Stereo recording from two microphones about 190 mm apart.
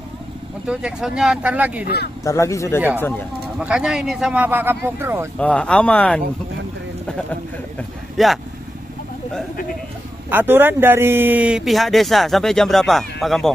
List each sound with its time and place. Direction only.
0.7 s speech: 5° right (ahead or behind)
2.2 s speech: 15° left (ahead or behind)
3.5 s speech: 5° right (ahead or behind)
5.4 s speech: 5° left (ahead or behind)
8.2 s speech: centre (ahead or behind)
10.3 s speech: 10° right (ahead or behind)